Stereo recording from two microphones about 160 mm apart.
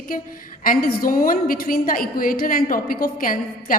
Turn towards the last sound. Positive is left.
turn(degrees=60)  # may be behind; listen again after turning